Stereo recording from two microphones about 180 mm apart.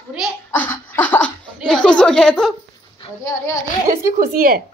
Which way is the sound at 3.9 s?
50° right (ahead or behind).